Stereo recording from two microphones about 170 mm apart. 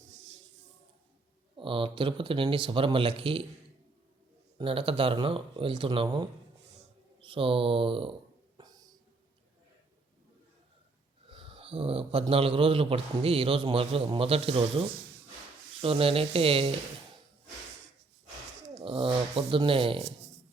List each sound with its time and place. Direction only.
1.5 s a man's voice: 30° right (ahead or behind)
4.5 s a man's voice: 30° right (ahead or behind)
8.5 s a sound: 20° right (ahead or behind)
11.3 s a sound: 35° right (ahead or behind)
12.3 s a man's voice: 35° right (ahead or behind)
18.7 s a man's voice: 35° right (ahead or behind)